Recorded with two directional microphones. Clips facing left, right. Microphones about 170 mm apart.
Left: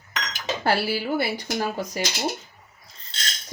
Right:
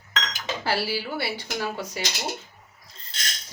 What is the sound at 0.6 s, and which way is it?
Speech, 55° left (ahead or behind).